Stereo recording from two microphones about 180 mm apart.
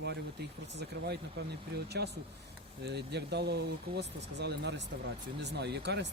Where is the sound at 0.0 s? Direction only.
65° right (ahead or behind).